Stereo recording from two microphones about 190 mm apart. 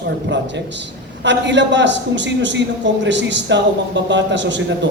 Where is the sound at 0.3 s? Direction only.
70° right (ahead or behind).